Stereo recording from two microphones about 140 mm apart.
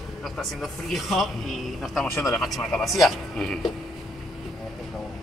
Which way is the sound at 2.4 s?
Centre (ahead or behind).